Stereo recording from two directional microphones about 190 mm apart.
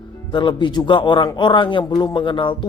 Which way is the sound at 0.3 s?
25° left (ahead or behind).